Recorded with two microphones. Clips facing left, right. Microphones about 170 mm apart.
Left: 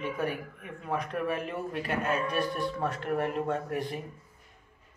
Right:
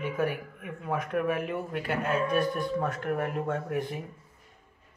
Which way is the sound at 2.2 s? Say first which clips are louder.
Right 4 dB; 50° right (ahead or behind).